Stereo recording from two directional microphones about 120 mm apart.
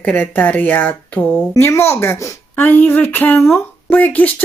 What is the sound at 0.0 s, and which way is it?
Speech, 10° left (ahead or behind).